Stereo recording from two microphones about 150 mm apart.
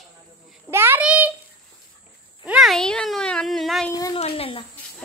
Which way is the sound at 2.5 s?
Centre (ahead or behind).